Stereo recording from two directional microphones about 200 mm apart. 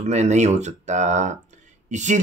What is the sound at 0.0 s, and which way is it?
Speech, 35° right (ahead or behind).